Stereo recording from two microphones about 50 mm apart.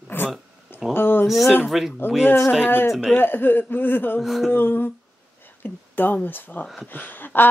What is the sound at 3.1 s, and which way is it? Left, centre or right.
A woman's voice, left.